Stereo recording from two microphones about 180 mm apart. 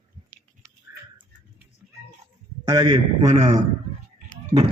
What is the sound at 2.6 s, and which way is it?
Speech, 20° right (ahead or behind).